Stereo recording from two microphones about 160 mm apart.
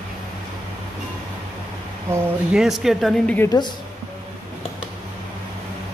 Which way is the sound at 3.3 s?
25° left (ahead or behind).